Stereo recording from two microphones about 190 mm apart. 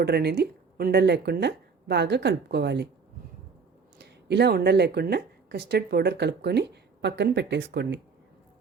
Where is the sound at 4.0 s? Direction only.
60° right (ahead or behind).